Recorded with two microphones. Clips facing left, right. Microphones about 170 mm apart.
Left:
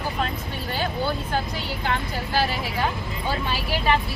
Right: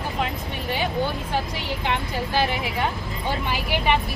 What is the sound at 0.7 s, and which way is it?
Speech, 15° right (ahead or behind).